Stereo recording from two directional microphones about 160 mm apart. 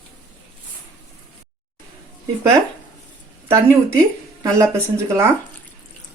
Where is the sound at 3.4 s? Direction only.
20° right (ahead or behind).